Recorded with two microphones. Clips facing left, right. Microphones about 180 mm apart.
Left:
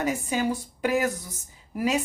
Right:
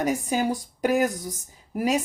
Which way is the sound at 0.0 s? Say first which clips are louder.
Right 2 dB; 40° right (ahead or behind).